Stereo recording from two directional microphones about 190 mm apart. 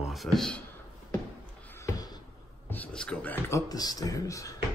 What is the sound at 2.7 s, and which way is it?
Speech, 5° left (ahead or behind).